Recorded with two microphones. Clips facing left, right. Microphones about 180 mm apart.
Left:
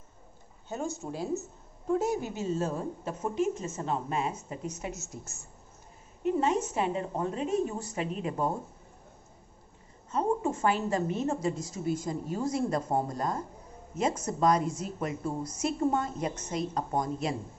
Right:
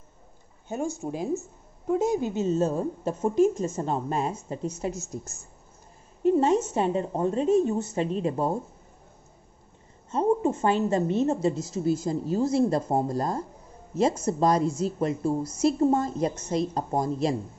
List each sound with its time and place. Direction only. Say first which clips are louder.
0.7 s a woman's voice: right 5 dB; 15° right (ahead or behind); by 8.5 s 30° right (ahead or behind)
10.1 s a woman's voice: right 5 dB; 25° right (ahead or behind)